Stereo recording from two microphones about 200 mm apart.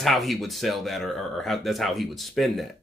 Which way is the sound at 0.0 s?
Centre (ahead or behind).